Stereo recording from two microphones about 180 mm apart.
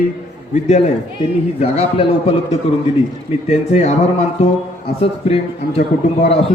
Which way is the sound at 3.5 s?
40° left (ahead or behind).